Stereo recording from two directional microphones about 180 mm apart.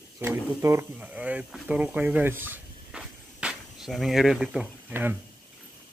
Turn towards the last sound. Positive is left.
turn(degrees=-10)  # may be behind; listen again after turning